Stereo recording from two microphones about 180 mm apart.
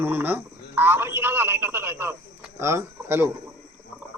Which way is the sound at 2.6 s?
15° right (ahead or behind).